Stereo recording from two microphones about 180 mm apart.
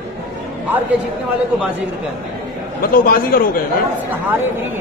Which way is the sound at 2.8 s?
55° left (ahead or behind).